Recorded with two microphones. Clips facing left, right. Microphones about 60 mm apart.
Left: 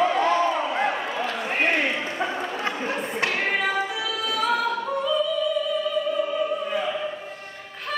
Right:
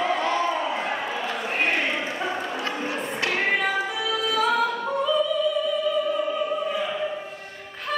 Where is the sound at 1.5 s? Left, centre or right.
Left.